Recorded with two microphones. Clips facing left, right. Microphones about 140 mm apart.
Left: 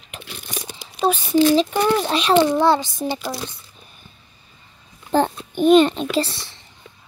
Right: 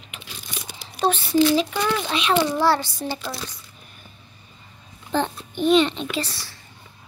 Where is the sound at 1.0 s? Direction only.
10° left (ahead or behind).